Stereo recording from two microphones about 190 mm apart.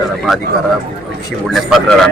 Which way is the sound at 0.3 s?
Centre (ahead or behind).